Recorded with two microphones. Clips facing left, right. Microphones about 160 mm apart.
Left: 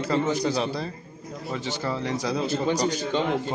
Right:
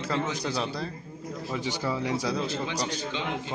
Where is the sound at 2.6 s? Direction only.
40° left (ahead or behind).